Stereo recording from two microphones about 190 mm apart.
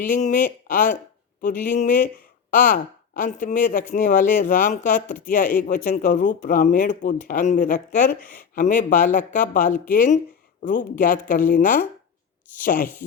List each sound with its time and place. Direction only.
0.0 s speech: 40° left (ahead or behind)